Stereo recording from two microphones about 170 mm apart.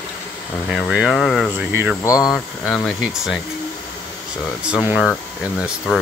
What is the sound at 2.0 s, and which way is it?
Speech, 20° left (ahead or behind).